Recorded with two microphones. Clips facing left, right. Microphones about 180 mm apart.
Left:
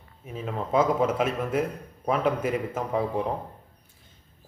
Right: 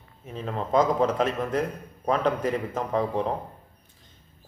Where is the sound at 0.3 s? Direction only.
5° left (ahead or behind).